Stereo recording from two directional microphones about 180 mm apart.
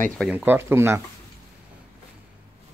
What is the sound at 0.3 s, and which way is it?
Speech, 10° right (ahead or behind).